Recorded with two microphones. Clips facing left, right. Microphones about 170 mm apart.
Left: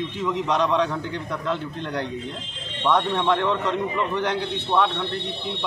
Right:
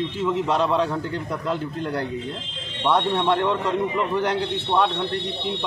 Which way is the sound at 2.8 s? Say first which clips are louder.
Right 1 dB; 10° right (ahead or behind).